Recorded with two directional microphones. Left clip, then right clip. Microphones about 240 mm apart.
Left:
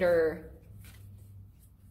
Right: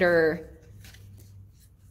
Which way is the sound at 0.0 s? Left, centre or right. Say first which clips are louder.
Right 4 dB; right.